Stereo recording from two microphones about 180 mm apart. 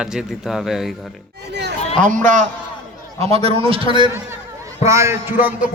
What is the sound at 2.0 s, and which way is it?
Speech, 45° right (ahead or behind).